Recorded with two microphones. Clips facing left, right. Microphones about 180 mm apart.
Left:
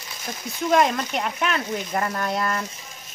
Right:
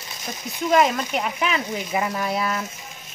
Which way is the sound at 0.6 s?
5° right (ahead or behind).